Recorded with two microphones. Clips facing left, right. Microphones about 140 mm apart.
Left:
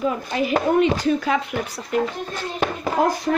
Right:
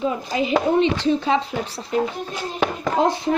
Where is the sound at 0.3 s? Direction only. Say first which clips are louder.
Right 1 dB; 20° right (ahead or behind).